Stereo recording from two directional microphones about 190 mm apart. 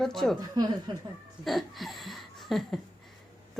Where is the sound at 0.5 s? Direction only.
20° right (ahead or behind).